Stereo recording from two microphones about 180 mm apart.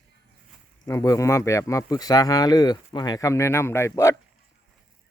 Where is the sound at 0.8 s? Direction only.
20° left (ahead or behind).